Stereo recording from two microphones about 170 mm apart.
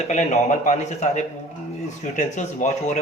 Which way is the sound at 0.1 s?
45° left (ahead or behind).